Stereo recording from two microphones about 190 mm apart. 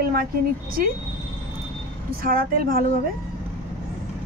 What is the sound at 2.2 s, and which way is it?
Speech, 50° right (ahead or behind).